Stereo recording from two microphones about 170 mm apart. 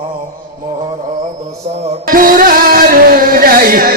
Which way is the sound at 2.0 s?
55° right (ahead or behind).